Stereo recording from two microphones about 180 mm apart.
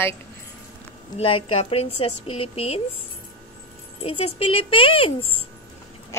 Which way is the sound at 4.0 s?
30° left (ahead or behind).